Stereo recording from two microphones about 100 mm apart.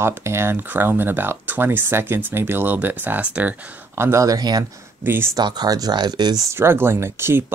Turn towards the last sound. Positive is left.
turn(degrees=-25)  # may be behind; listen again after turning